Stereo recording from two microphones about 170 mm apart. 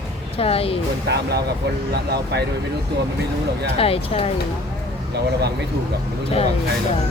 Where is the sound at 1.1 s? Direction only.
75° right (ahead or behind).